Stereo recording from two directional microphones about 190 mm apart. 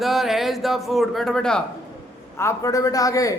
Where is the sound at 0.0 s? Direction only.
Centre (ahead or behind).